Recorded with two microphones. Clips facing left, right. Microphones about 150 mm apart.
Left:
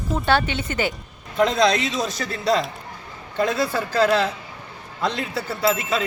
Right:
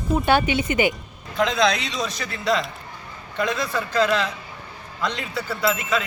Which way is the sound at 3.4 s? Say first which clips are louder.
Left 3 dB; 35° left (ahead or behind).